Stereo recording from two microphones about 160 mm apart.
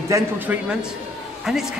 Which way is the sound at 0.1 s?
20° right (ahead or behind).